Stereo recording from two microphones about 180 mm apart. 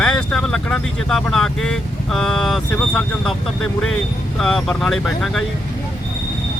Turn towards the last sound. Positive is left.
turn(degrees=0)  # may be behind; listen again after turning